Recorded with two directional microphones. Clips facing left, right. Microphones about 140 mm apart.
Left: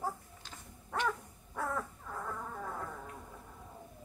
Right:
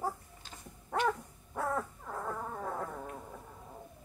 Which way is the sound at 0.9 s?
35° right (ahead or behind).